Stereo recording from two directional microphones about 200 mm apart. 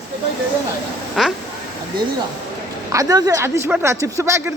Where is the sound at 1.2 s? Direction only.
Centre (ahead or behind).